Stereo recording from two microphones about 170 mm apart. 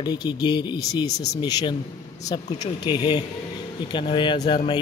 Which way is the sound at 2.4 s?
45° left (ahead or behind).